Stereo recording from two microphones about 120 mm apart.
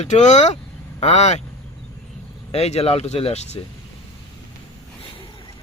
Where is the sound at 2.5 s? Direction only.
60° left (ahead or behind).